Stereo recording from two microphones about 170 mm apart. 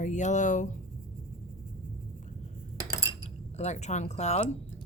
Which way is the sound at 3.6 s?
40° left (ahead or behind).